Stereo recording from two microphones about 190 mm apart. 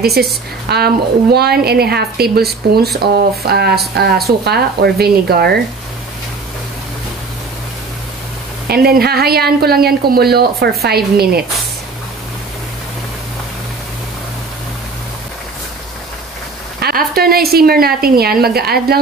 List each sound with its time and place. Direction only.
0.0 s a woman's voice: 55° right (ahead or behind)
8.6 s a woman's voice: 55° right (ahead or behind)
16.8 s a woman's voice: 55° right (ahead or behind)